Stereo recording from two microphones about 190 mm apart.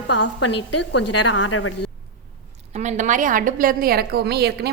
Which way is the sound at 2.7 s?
40° right (ahead or behind).